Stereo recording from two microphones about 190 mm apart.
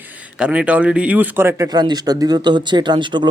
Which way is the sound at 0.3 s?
5° right (ahead or behind).